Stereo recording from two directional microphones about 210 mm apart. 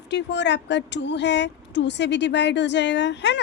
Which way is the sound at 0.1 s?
55° left (ahead or behind).